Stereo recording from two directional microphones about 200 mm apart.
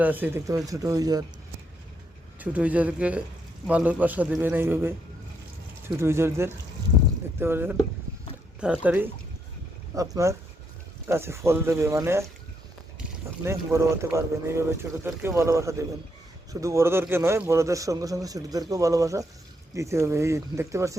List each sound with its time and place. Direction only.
0.0 s speech: 10° right (ahead or behind)
2.4 s speech: 5° right (ahead or behind)
6.0 s speech: 15° right (ahead or behind)